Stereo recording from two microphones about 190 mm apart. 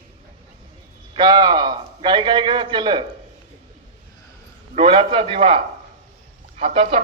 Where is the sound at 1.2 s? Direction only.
25° right (ahead or behind).